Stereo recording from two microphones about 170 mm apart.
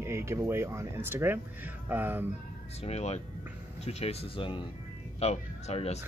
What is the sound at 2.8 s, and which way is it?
Speech, 40° left (ahead or behind).